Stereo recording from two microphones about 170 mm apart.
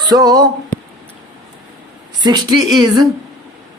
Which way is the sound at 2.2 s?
25° right (ahead or behind).